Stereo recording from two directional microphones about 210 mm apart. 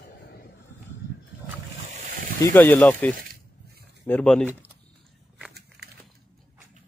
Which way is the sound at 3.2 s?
45° right (ahead or behind).